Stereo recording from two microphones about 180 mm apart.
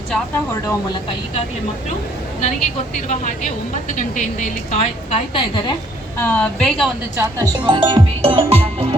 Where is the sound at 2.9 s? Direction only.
40° left (ahead or behind).